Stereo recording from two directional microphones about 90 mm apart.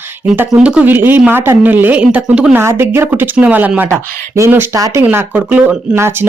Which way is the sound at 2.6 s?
30° right (ahead or behind).